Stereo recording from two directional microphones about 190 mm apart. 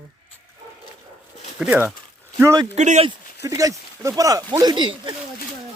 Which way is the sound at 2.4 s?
15° right (ahead or behind).